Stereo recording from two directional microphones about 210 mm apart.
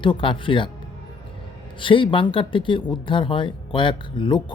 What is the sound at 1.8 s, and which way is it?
A man's voice, 25° left (ahead or behind).